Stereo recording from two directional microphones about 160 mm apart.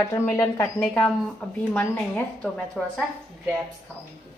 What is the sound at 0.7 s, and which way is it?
A woman's voice, 5° left (ahead or behind).